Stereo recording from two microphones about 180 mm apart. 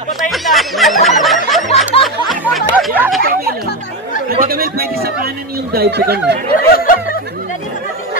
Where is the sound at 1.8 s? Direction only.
Centre (ahead or behind).